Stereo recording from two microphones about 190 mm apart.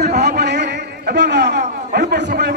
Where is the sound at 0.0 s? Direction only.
60° right (ahead or behind).